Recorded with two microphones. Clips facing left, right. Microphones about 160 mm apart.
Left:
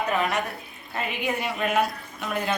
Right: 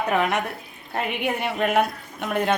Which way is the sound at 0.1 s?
65° right (ahead or behind).